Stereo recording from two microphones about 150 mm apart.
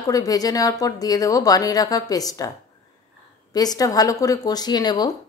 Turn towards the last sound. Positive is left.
turn(degrees=25)  # may be behind; listen again after turning